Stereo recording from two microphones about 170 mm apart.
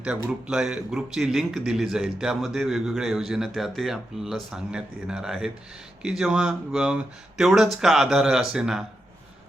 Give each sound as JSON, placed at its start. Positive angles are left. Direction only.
{"t": 0.2, "sound": "speech", "side_deg": -5}